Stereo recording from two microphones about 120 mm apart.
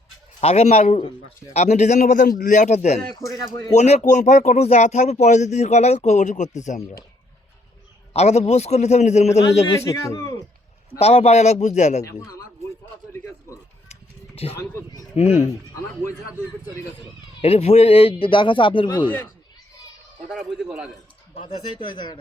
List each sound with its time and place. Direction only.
0.4 s a man's voice: 60° left (ahead or behind)
3.2 s speech: 25° left (ahead or behind)
3.8 s speech: 65° left (ahead or behind)
8.1 s a man's voice: 65° left (ahead or behind)
9.8 s speech: 25° left (ahead or behind)
11.0 s speech: 60° left (ahead or behind)
12.0 s speech: 25° left (ahead or behind)
13.1 s a sound: 20° left (ahead or behind)
14.6 s speech: 25° left (ahead or behind)
15.1 s a man's voice: 60° left (ahead or behind)
17.4 s a man's voice: 55° left (ahead or behind); by 19.1 s 40° left (ahead or behind)
20.3 s a man's voice: 5° right (ahead or behind)
21.4 s speech: 40° left (ahead or behind)